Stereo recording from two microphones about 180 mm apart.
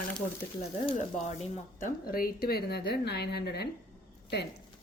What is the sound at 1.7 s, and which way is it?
A woman's voice, 50° left (ahead or behind).